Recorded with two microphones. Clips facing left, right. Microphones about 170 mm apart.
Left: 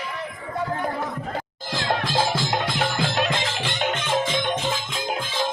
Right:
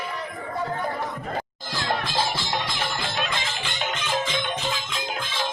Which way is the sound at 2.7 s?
70° left (ahead or behind).